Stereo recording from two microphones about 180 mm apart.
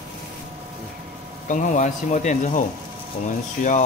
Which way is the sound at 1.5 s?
45° left (ahead or behind).